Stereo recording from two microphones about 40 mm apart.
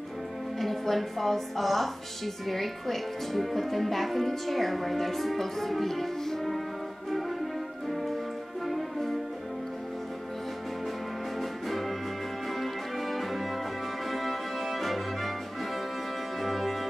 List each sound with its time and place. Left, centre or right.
0.6 s a woman's voice: centre
7.1 s music: centre
11.3 s music: centre
16.3 s music: centre